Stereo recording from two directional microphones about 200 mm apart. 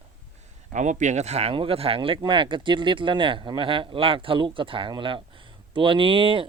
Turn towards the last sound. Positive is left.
turn(degrees=-25)  # may be behind; listen again after turning